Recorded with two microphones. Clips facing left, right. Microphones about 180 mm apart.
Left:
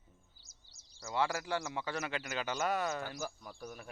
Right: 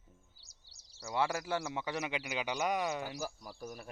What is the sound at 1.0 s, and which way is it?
Speech, 15° right (ahead or behind).